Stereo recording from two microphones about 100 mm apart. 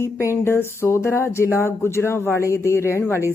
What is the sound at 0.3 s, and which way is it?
Speech, 25° left (ahead or behind).